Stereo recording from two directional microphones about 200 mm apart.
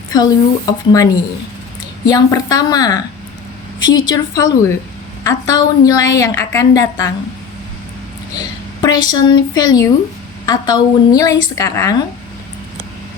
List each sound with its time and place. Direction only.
0.1 s a woman's voice: 20° left (ahead or behind)
8.4 s a woman's voice: 20° left (ahead or behind)